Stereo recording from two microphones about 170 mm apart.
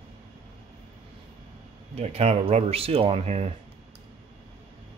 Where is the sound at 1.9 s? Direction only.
40° right (ahead or behind).